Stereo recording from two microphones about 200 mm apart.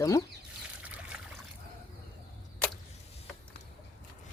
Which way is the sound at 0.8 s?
5° right (ahead or behind).